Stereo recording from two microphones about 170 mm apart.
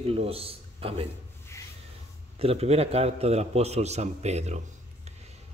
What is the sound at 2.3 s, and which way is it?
A man's voice, 35° right (ahead or behind).